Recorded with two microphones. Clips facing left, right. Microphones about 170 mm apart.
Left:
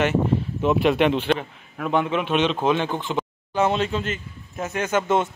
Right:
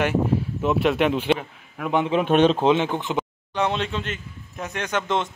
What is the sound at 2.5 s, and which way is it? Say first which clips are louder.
Speech: right 2 dB; 25° right (ahead or behind).